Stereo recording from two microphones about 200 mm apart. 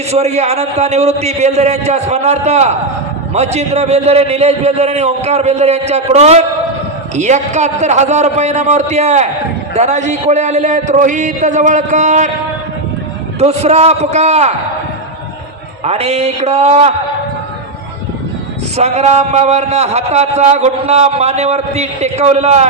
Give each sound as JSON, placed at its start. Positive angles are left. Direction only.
{"t": 0.1, "sound": "a man's voice", "side_deg": -30}
{"t": 13.4, "sound": "a man's voice", "side_deg": -30}
{"t": 15.8, "sound": "a man's voice", "side_deg": -30}
{"t": 18.8, "sound": "a man's voice", "side_deg": -35}